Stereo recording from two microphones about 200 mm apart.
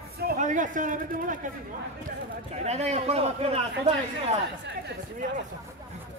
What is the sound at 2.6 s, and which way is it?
Speech, 35° right (ahead or behind).